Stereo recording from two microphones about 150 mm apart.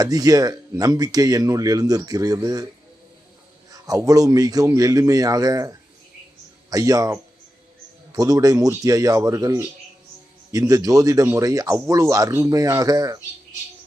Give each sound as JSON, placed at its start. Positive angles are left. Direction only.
{"t": 0.0, "sound": "speech", "side_deg": -25}
{"t": 3.7, "sound": "speech", "side_deg": -25}